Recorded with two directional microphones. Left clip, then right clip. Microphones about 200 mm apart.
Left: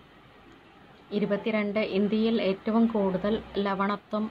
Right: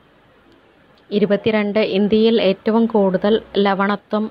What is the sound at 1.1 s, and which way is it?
A woman's voice, 35° right (ahead or behind).